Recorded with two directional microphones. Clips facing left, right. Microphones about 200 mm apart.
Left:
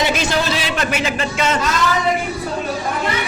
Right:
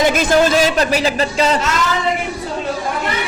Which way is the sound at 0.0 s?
50° right (ahead or behind).